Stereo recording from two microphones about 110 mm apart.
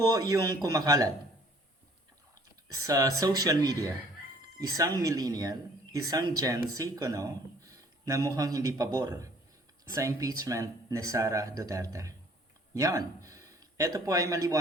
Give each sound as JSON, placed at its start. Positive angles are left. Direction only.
{"t": 0.1, "sound": "speech", "side_deg": -35}
{"t": 2.7, "sound": "speech", "side_deg": -35}